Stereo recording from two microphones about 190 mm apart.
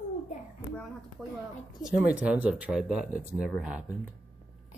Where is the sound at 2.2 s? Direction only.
10° right (ahead or behind).